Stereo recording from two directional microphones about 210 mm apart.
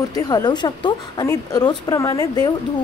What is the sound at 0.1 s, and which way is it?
A woman's voice, 20° left (ahead or behind).